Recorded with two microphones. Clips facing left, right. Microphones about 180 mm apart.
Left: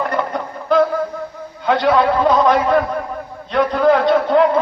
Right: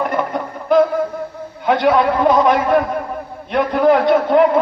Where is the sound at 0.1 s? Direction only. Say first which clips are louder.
Right 1 dB; 20° right (ahead or behind).